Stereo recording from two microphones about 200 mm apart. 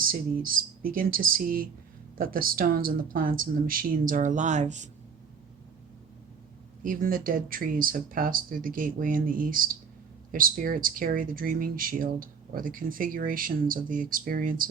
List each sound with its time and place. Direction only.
0.0 s speech: 45° right (ahead or behind)
6.8 s speech: 45° right (ahead or behind)